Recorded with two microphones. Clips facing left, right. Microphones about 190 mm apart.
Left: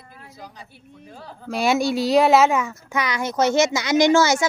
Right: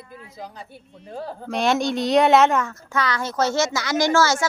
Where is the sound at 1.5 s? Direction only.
5° left (ahead or behind).